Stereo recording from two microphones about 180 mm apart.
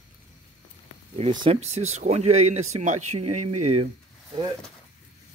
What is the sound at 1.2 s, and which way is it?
Speech, 30° right (ahead or behind).